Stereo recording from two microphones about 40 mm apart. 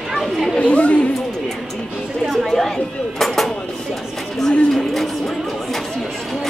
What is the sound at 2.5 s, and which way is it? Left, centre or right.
Speech, centre.